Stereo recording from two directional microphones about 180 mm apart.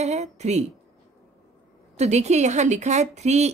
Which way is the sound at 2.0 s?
40° right (ahead or behind).